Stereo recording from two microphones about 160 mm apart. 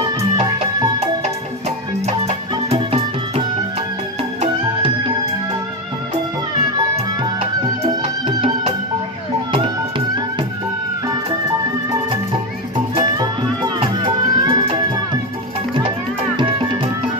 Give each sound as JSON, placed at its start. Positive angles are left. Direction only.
{"t": 0.9, "sound": "music", "side_deg": -40}
{"t": 2.7, "sound": "music", "side_deg": -35}
{"t": 8.3, "sound": "music", "side_deg": -35}
{"t": 13.7, "sound": "music", "side_deg": -25}
{"t": 16.3, "sound": "music", "side_deg": -30}